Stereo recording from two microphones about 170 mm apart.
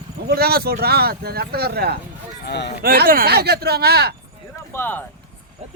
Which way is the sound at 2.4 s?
90° left.